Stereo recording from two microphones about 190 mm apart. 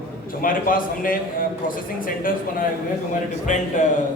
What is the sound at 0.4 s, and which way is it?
Speech, 45° left (ahead or behind).